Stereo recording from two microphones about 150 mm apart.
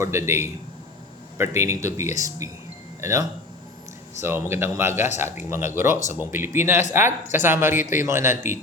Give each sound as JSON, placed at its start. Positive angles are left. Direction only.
{"t": 0.0, "sound": "speech", "side_deg": -15}